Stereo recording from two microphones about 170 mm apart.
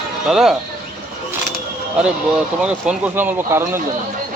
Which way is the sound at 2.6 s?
5° right (ahead or behind).